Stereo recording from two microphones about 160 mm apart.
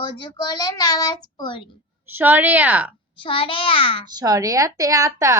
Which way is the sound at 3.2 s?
30° left (ahead or behind).